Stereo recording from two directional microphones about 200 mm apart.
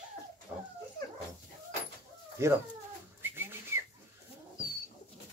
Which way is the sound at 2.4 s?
15° right (ahead or behind).